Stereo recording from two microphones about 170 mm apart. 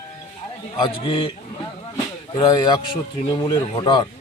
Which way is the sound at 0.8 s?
30° left (ahead or behind).